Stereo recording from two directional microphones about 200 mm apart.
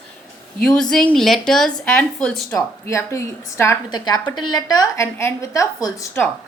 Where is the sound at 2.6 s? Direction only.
15° left (ahead or behind).